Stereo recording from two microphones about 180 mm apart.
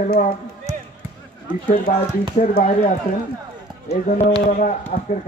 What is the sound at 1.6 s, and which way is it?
Speech, 45° left (ahead or behind).